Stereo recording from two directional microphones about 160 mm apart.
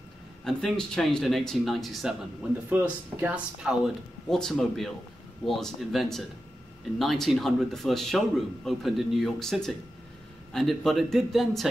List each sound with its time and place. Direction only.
0.5 s speech: 5° left (ahead or behind)
2.7 s speech: 10° right (ahead or behind)